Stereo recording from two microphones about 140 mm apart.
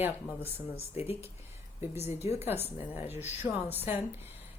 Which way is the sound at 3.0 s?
50° left (ahead or behind).